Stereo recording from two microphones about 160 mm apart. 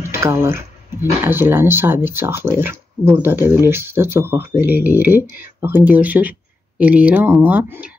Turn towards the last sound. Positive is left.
turn(degrees=-10)  # may be behind; listen again after turning